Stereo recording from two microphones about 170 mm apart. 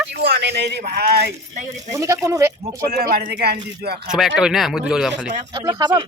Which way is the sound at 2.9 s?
60° right (ahead or behind).